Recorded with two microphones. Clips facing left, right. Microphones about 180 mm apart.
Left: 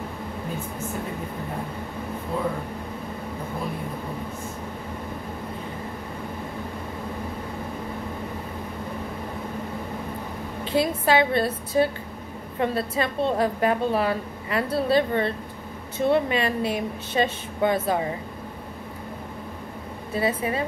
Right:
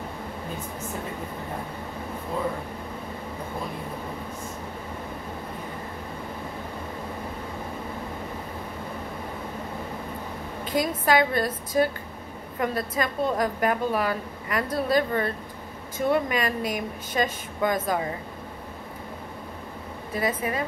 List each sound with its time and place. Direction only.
10.6 s a sound: 30° left (ahead or behind)
11.1 s a woman's voice: 30° left (ahead or behind)
20.2 s a woman's voice: 30° left (ahead or behind)